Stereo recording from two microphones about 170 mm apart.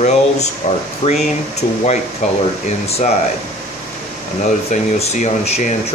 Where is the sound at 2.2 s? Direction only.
40° left (ahead or behind).